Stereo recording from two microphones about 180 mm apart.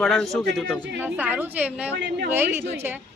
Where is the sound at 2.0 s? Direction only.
65° right (ahead or behind).